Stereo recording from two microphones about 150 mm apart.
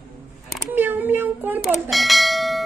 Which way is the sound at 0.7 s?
15° right (ahead or behind).